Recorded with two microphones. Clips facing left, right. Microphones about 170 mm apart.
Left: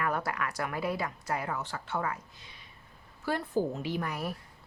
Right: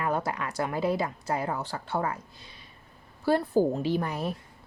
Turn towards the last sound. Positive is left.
turn(degrees=-25)  # may be behind; listen again after turning